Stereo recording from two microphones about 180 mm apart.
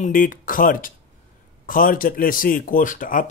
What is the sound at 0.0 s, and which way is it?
Speech, 50° left (ahead or behind).